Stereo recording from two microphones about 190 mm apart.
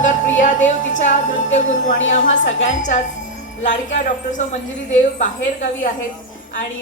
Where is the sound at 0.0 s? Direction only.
40° left (ahead or behind).